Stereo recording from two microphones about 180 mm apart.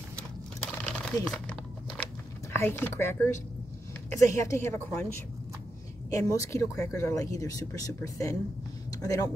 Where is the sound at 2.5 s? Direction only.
15° left (ahead or behind).